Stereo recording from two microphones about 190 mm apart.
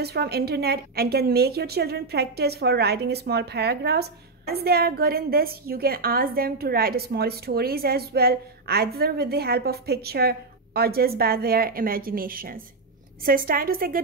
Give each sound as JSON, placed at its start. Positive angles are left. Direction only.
{"t": 0.0, "sound": "a woman's voice", "side_deg": -55}